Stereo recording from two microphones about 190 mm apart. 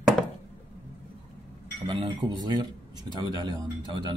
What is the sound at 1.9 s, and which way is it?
Speech, 25° right (ahead or behind).